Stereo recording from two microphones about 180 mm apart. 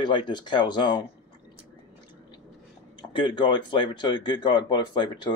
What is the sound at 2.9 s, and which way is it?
Speech, 25° left (ahead or behind).